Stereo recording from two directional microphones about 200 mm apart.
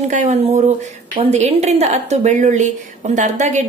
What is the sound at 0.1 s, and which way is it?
A woman's voice, 35° right (ahead or behind).